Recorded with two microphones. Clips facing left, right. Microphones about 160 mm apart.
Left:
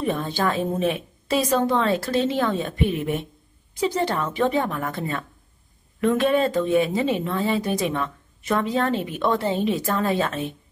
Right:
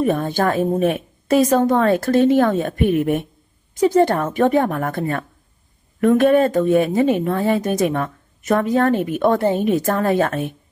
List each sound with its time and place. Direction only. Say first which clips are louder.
0.0 s speech: right 6 dB; 45° right (ahead or behind)